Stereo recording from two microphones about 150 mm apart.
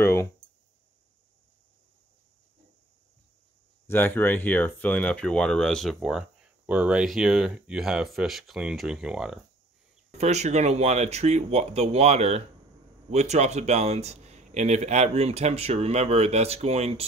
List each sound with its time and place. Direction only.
0.0 s a sound: 15° left (ahead or behind)
3.8 s speech: 15° left (ahead or behind); by 9.4 s 5° right (ahead or behind)
10.1 s speech: 45° right (ahead or behind)